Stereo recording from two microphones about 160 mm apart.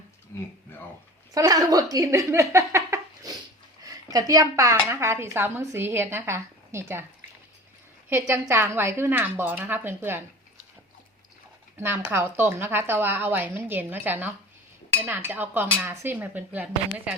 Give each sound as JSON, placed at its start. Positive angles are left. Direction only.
{"t": 1.3, "sound": "a woman's voice", "side_deg": -20}
{"t": 8.1, "sound": "a woman's voice", "side_deg": -15}
{"t": 11.8, "sound": "a woman's voice", "side_deg": -15}